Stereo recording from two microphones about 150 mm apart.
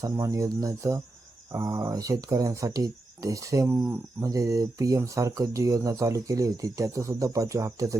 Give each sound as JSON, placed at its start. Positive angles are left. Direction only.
{"t": 0.0, "sound": "speech", "side_deg": -25}